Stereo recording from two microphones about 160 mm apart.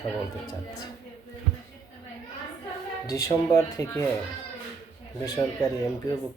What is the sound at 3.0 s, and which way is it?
Speech, 20° left (ahead or behind).